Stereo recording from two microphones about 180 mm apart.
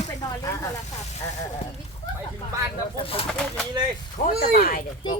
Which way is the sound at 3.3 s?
5° left (ahead or behind).